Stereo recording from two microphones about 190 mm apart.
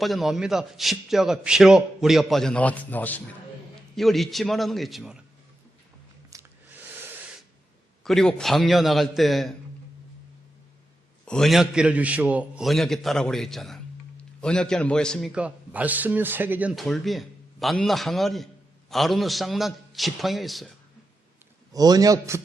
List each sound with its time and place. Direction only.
0.0 s a man's voice: centre (ahead or behind)
6.3 s a sound: 15° right (ahead or behind)
7.0 s snort: 10° right (ahead or behind)
8.0 s a man's voice: centre (ahead or behind)
11.3 s a man's voice: centre (ahead or behind)
21.7 s a man's voice: 20° right (ahead or behind)